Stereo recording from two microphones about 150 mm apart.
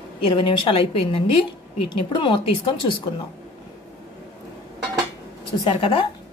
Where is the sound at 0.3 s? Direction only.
35° left (ahead or behind).